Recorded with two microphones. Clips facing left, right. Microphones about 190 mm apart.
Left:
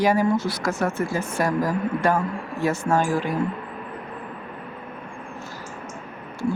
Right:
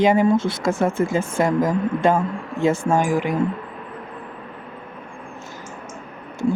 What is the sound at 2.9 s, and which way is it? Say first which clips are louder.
Speech: right 3 dB; 15° right (ahead or behind).